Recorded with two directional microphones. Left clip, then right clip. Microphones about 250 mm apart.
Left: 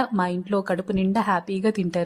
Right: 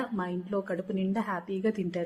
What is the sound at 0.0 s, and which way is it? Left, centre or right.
A woman's voice, left.